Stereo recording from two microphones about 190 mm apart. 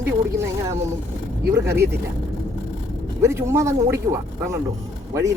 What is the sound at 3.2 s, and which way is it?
Speech, 15° right (ahead or behind).